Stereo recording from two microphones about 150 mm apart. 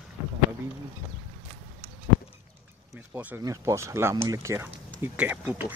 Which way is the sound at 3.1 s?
15° right (ahead or behind).